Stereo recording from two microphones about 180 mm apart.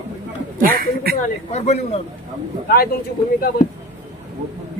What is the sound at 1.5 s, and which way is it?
Speech, 40° left (ahead or behind).